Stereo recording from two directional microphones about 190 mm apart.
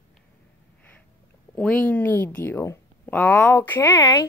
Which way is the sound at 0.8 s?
10° left (ahead or behind).